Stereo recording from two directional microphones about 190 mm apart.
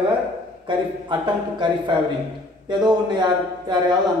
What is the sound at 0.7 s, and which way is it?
Speech, 25° right (ahead or behind).